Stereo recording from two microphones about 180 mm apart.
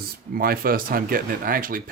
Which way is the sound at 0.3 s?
55° right (ahead or behind).